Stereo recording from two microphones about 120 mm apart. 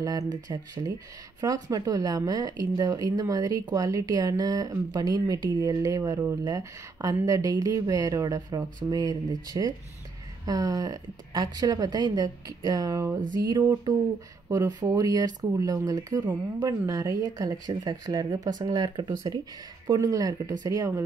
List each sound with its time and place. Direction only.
0.0 s speech: 30° right (ahead or behind)